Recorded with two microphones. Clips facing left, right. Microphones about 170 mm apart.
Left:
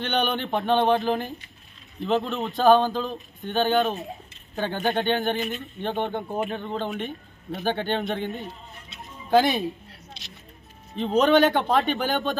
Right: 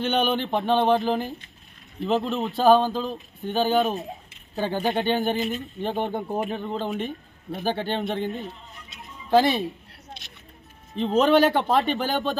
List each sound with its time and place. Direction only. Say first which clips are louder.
0.0 s speech: right 2 dB; 5° right (ahead or behind)
10.2 s speech: left 1 dB; 55° right (ahead or behind)
11.0 s speech: even; centre (ahead or behind)